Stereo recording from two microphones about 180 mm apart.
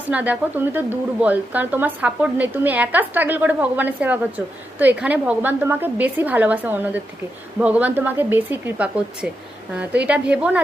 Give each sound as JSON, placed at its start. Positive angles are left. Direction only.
{"t": 0.0, "sound": "a woman's voice", "side_deg": -10}